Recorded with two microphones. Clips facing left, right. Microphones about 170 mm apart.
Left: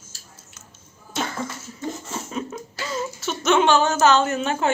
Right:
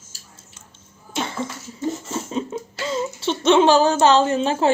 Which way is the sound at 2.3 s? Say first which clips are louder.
Right 4 dB; 30° right (ahead or behind).